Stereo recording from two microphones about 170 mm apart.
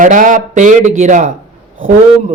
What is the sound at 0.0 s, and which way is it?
A man's voice, 50° right (ahead or behind).